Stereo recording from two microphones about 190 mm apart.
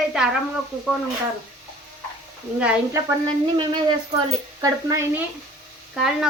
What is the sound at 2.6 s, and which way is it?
Speech, 5° right (ahead or behind).